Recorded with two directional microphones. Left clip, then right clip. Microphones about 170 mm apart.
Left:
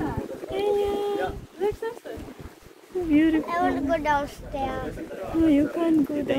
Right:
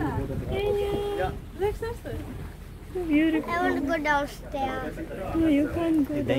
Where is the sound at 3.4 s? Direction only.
35° right (ahead or behind).